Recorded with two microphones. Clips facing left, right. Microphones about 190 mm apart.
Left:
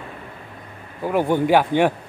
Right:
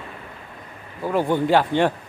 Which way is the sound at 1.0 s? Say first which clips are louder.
Left 1 dB; 10° left (ahead or behind).